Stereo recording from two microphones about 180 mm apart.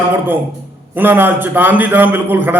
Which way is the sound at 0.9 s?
10° right (ahead or behind).